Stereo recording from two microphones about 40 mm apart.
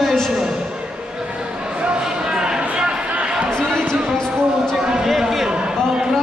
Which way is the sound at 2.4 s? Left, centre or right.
Right.